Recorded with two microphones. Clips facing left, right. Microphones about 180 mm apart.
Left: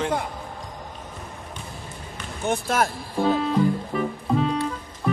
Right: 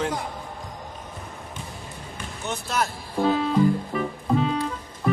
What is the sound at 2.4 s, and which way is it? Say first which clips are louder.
Speech: left 5 dB; 50° left (ahead or behind).